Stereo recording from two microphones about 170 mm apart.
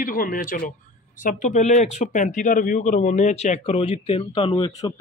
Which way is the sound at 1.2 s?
45° left (ahead or behind).